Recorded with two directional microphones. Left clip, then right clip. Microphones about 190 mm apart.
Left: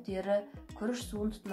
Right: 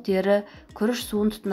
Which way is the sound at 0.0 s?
35° right (ahead or behind).